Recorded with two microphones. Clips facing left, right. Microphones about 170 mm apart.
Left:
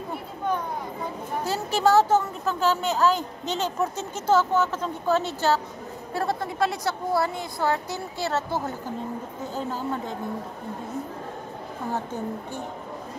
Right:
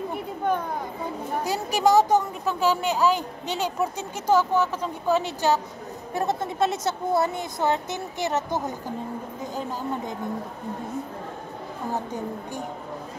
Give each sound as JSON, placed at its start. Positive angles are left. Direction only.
{"t": 1.4, "sound": "a woman's voice", "side_deg": -15}
{"t": 11.9, "sound": "a woman's voice", "side_deg": -15}